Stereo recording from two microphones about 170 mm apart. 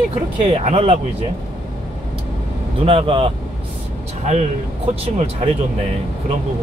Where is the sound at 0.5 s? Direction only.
35° right (ahead or behind).